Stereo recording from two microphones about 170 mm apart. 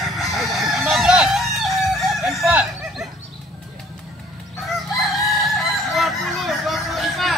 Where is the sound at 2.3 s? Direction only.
10° right (ahead or behind).